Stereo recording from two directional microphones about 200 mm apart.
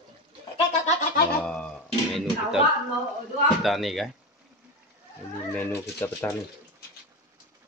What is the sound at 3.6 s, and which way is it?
Speech, centre (ahead or behind).